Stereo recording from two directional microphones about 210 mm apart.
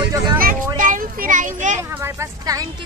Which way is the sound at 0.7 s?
40° right (ahead or behind).